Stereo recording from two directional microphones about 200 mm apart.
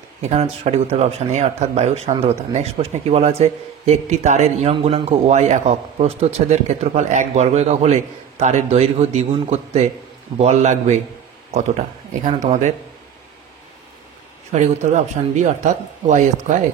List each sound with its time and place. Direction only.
0.2 s speech: 35° right (ahead or behind)
14.5 s speech: 35° right (ahead or behind)